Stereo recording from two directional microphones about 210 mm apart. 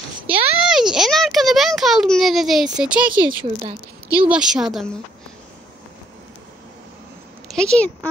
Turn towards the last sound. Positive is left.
turn(degrees=5)  # may be behind; listen again after turning